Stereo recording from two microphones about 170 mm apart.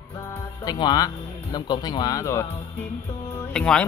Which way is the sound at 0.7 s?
25° left (ahead or behind).